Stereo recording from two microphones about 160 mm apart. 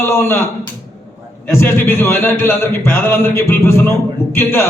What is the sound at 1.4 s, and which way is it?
A man's voice, 15° left (ahead or behind).